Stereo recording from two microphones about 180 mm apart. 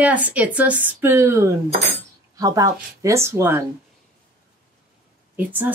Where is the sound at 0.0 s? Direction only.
10° right (ahead or behind).